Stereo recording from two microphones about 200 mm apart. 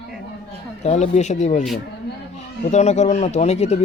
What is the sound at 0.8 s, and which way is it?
Speech, 35° left (ahead or behind).